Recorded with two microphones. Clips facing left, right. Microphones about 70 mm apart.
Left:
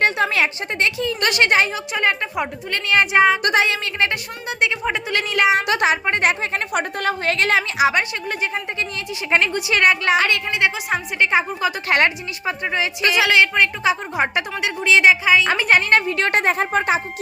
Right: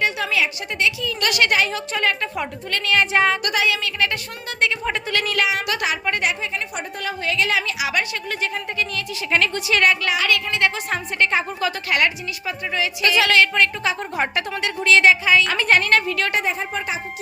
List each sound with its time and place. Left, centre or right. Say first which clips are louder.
0.0 s a woman's voice: left 3 dB; left
1.7 s a woman's voice: left 2 dB; centre
3.4 s a woman's voice: left 3 dB; left
4.4 s speech: left 1 dB; centre
5.2 s a woman's voice: left 7 dB; left
6.2 s a woman's voice: left 4 dB; left
8.3 s a woman's voice: left 1 dB; left
10.5 s a woman's voice: left 1 dB; centre
11.9 s a woman's voice: left 4 dB; left
16.3 s a woman's voice: left 5 dB; left